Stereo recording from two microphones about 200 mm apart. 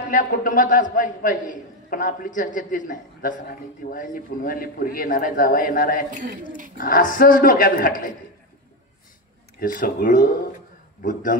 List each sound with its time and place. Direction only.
0.1 s a man's voice: 40° left (ahead or behind)
9.6 s a man's voice: 45° left (ahead or behind)